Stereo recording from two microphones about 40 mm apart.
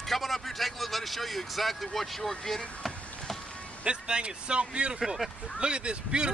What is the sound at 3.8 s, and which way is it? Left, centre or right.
Speech, right.